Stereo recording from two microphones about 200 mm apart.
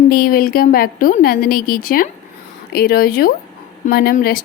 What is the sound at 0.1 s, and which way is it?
Speech, 45° left (ahead or behind).